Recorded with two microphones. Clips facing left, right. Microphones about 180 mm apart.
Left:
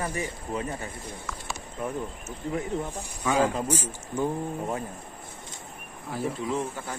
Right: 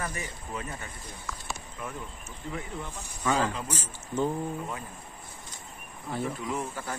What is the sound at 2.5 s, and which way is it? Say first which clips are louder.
Speech: left 8 dB; 40° left (ahead or behind).